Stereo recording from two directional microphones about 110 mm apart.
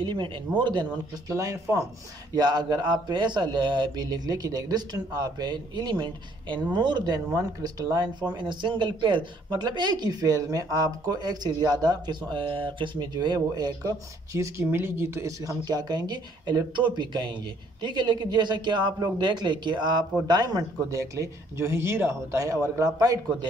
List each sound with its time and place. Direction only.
0.0 s a man's voice: 45° right (ahead or behind)
1.3 s speech: 25° right (ahead or behind)
2.3 s speech: 40° right (ahead or behind)
8.4 s a man's voice: 45° right (ahead or behind); by 22.8 s 30° right (ahead or behind)